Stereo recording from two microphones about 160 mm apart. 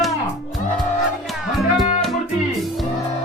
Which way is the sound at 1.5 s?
Centre (ahead or behind).